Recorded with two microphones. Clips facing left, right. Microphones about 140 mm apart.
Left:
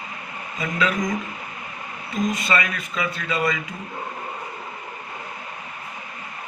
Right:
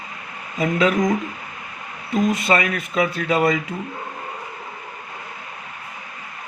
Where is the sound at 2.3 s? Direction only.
65° right (ahead or behind).